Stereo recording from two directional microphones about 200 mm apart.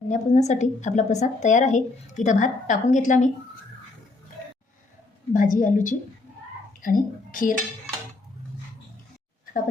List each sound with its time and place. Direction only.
0.1 s a woman's voice: 35° left (ahead or behind)
5.3 s a woman's voice: 40° left (ahead or behind)